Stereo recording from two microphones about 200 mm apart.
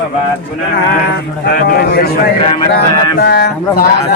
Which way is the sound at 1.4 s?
50° left (ahead or behind).